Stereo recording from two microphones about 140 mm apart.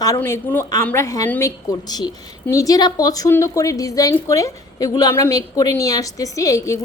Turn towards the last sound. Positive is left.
turn(degrees=20)  # may be behind; listen again after turning